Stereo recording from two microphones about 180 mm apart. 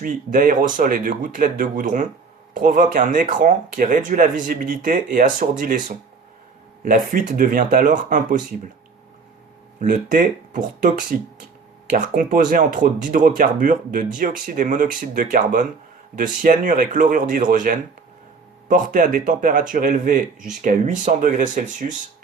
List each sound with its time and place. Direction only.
0.0 s speech: 50° right (ahead or behind)
9.9 s speech: 45° right (ahead or behind)